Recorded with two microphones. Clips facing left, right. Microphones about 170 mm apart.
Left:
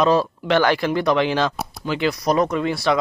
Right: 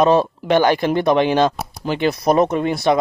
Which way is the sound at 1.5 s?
Centre (ahead or behind).